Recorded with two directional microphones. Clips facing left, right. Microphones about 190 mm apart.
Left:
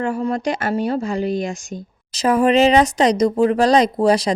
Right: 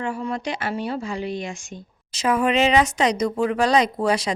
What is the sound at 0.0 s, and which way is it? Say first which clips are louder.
Speech: left 6 dB; 40° left (ahead or behind).